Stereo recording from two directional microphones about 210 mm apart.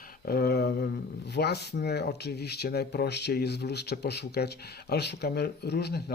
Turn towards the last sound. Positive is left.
turn(degrees=50)  # may be behind; listen again after turning